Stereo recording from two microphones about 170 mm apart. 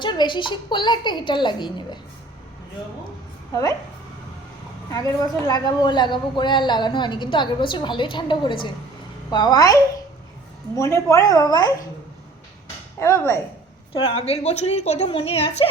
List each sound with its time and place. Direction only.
0.0 s a woman's voice: 25° left (ahead or behind)
3.5 s a woman's voice: 20° left (ahead or behind)
4.9 s a woman's voice: 25° left (ahead or behind)
13.0 s speech: 15° left (ahead or behind)
14.0 s a woman's voice: 35° left (ahead or behind)